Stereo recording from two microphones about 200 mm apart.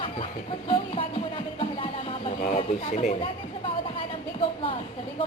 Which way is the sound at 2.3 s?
40° left (ahead or behind).